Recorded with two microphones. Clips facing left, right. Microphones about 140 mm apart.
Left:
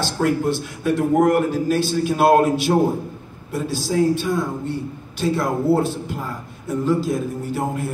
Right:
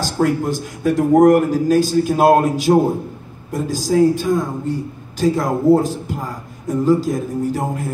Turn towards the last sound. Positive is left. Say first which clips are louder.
# right 3 dB
turn(degrees=-40)  # may be behind; listen again after turning